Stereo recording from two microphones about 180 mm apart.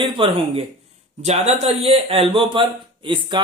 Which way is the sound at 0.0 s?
30° right (ahead or behind).